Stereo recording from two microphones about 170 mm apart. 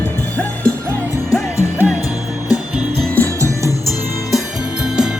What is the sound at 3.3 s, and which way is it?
Music, 20° right (ahead or behind).